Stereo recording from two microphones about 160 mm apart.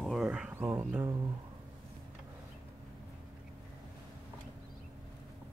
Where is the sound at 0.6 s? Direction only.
10° right (ahead or behind).